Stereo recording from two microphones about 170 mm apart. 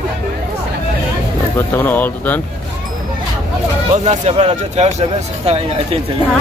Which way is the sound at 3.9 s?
40° right (ahead or behind).